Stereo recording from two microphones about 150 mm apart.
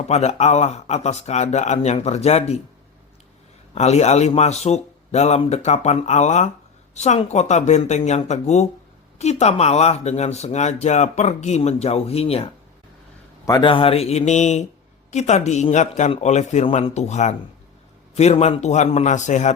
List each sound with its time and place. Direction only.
0.1 s speech: 45° left (ahead or behind)
3.8 s speech: 45° left (ahead or behind)
13.4 s speech: 30° left (ahead or behind); by 19.5 s 55° left (ahead or behind)